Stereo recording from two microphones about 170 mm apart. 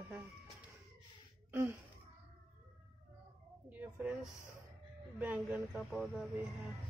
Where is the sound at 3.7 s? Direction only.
10° right (ahead or behind).